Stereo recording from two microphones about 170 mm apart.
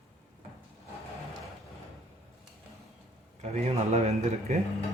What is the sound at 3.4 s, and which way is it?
Speech, 35° right (ahead or behind).